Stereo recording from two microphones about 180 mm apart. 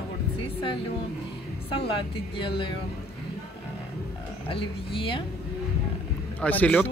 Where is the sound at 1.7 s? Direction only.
30° left (ahead or behind).